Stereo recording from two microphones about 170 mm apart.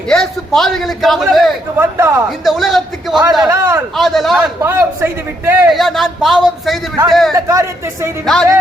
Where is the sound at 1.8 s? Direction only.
15° right (ahead or behind).